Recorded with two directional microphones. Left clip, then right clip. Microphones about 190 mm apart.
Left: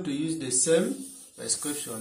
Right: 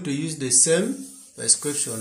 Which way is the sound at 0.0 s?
50° right (ahead or behind).